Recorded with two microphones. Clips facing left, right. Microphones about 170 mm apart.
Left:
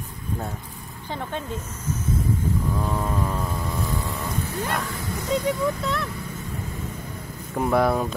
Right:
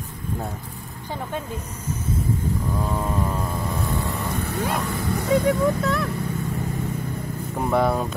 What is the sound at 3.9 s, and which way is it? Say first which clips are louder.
Vehicle: right 2 dB; 65° right (ahead or behind).